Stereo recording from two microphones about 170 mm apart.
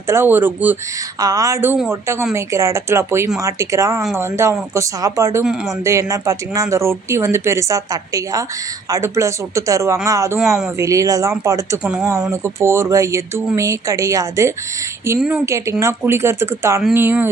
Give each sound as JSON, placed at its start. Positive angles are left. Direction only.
{"t": 0.0, "sound": "speech", "side_deg": -15}
{"t": 5.4, "sound": "speech", "side_deg": -5}
{"t": 5.9, "sound": "speech", "side_deg": -20}
{"t": 10.4, "sound": "speech", "side_deg": 0}
{"t": 10.8, "sound": "speech", "side_deg": -20}
{"t": 11.8, "sound": "speech", "side_deg": -5}
{"t": 12.3, "sound": "speech", "side_deg": -15}
{"t": 15.1, "sound": "speech", "side_deg": -5}
{"t": 15.4, "sound": "speech", "side_deg": -15}